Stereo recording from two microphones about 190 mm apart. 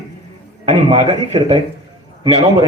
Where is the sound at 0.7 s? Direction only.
35° right (ahead or behind).